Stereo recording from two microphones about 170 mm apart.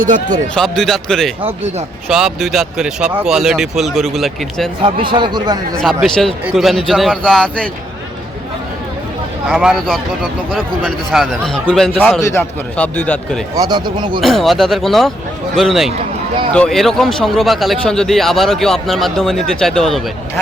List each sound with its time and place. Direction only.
0.0 s speech: 45° right (ahead or behind)
0.5 s speech: 5° left (ahead or behind)
4.8 s speech: 30° right (ahead or behind)
5.8 s speech: centre (ahead or behind)
9.5 s a man's voice: 5° right (ahead or behind)
13.6 s speech: 25° right (ahead or behind)
14.2 s speech: centre (ahead or behind)